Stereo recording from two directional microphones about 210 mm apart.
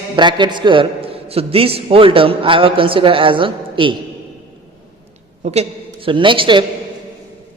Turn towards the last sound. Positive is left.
turn(degrees=-25)  # may be behind; listen again after turning